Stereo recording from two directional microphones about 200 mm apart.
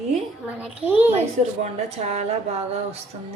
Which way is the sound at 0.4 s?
10° right (ahead or behind).